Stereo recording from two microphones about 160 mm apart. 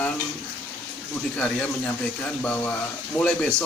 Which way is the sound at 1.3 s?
5° left (ahead or behind).